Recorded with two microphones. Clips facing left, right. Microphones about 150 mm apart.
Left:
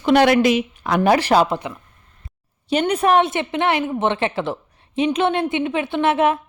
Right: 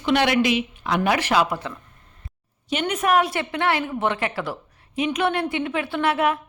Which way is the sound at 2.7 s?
35° left (ahead or behind).